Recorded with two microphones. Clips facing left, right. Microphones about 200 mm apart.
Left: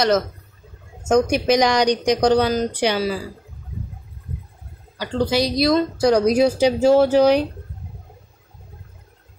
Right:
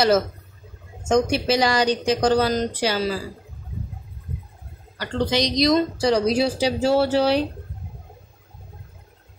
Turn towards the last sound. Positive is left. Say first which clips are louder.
# left 5 dB
turn(degrees=15)  # may be behind; listen again after turning